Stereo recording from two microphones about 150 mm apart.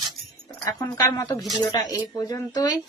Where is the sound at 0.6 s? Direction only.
25° left (ahead or behind).